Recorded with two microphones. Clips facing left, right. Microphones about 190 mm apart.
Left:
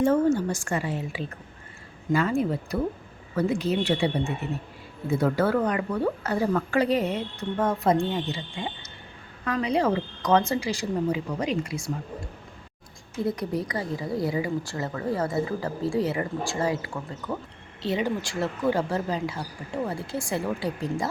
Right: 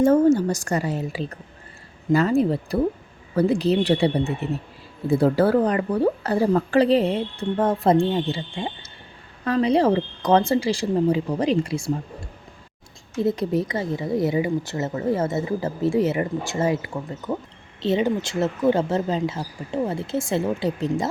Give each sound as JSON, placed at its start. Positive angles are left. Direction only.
{"t": 0.0, "sound": "a woman's voice", "side_deg": -40}
{"t": 13.2, "sound": "a woman's voice", "side_deg": -25}